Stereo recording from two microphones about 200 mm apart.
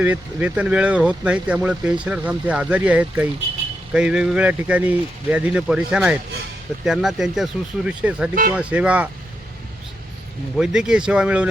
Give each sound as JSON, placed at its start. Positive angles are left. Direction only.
{"t": 0.0, "sound": "speech", "side_deg": -5}
{"t": 10.6, "sound": "speech", "side_deg": -5}